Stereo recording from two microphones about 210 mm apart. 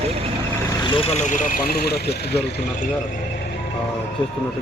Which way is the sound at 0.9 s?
30° left (ahead or behind).